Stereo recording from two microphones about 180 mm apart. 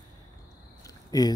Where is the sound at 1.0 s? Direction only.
20° left (ahead or behind).